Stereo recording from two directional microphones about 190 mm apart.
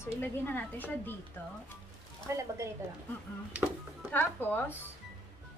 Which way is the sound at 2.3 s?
15° right (ahead or behind).